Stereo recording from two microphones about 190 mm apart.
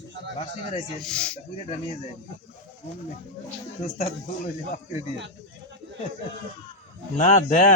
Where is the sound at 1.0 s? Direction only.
5° left (ahead or behind).